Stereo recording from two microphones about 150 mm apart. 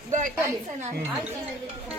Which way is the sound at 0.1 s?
55° right (ahead or behind).